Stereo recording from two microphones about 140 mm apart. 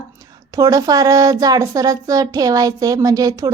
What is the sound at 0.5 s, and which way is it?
Speech, 25° right (ahead or behind).